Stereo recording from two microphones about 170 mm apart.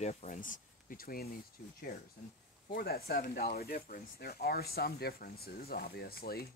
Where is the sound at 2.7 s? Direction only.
60° left (ahead or behind).